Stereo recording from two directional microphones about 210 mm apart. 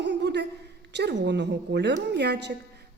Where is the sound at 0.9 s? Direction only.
55° right (ahead or behind).